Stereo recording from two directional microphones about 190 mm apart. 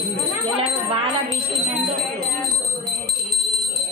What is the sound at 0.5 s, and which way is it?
Bell, 30° right (ahead or behind).